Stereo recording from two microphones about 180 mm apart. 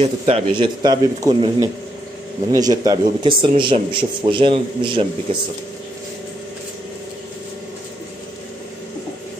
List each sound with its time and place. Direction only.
0.0 s a man's voice: 30° right (ahead or behind)